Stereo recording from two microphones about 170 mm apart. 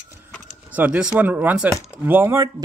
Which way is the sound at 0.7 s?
10° right (ahead or behind).